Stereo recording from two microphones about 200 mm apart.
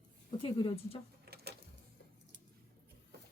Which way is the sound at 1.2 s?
55° right (ahead or behind).